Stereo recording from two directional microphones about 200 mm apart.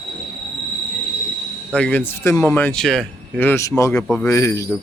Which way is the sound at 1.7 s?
5° left (ahead or behind).